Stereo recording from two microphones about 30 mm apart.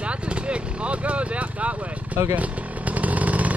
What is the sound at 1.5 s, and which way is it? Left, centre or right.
Chainsaw, right.